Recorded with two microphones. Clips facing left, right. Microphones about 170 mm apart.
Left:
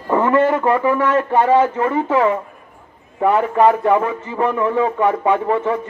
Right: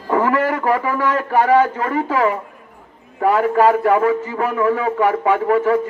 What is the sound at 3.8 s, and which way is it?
Speech, 25° left (ahead or behind).